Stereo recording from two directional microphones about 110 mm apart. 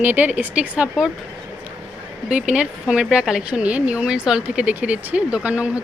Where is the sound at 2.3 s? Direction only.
10° right (ahead or behind).